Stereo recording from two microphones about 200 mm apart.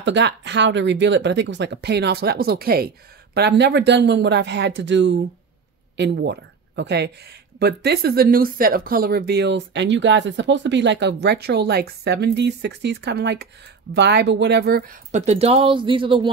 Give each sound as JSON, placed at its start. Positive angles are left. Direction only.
{"t": 0.0, "sound": "speech", "side_deg": -65}
{"t": 15.0, "sound": "speech", "side_deg": -35}